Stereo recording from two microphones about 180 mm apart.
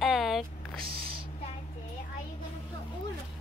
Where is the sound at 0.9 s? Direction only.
30° right (ahead or behind).